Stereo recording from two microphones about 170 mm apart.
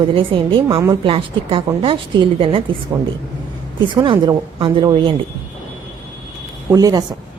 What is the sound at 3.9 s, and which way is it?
A woman's voice, 30° right (ahead or behind).